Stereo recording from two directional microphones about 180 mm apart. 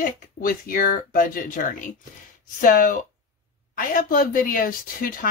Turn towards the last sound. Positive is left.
turn(degrees=50)  # may be behind; listen again after turning